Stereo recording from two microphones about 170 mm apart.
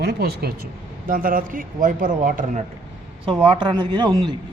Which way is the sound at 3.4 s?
25° right (ahead or behind).